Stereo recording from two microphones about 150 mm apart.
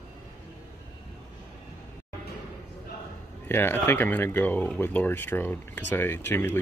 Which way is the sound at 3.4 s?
15° left (ahead or behind).